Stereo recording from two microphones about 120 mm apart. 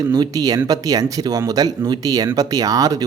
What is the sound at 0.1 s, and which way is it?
Speech, 35° right (ahead or behind).